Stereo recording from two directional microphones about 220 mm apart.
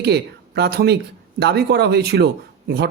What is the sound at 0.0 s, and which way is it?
Speech, 50° right (ahead or behind).